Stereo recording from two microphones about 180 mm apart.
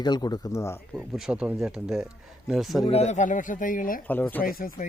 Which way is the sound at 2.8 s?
35° left (ahead or behind).